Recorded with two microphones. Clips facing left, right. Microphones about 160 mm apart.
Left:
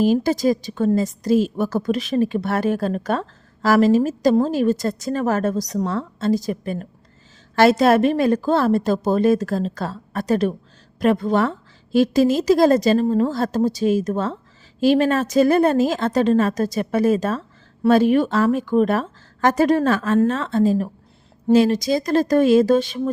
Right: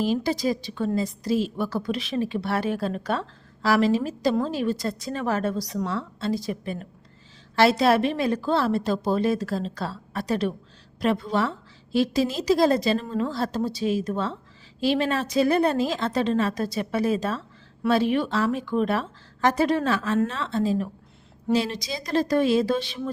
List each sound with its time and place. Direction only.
0.0 s a woman's voice: 45° left (ahead or behind)